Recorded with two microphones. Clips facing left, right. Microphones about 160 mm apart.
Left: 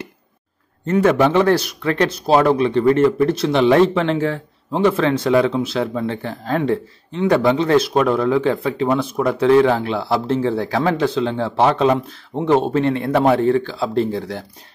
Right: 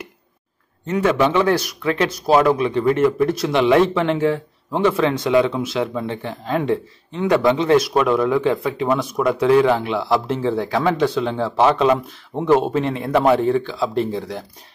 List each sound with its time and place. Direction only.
0.8 s speech: 40° left (ahead or behind)
2.0 s speech: 25° left (ahead or behind)
12.3 s speech: 20° left (ahead or behind)
13.1 s speech: 35° left (ahead or behind)